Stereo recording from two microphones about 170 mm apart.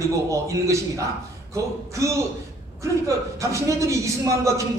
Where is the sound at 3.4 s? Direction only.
15° right (ahead or behind).